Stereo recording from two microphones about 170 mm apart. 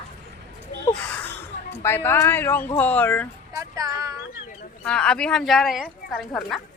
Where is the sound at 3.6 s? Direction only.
20° right (ahead or behind).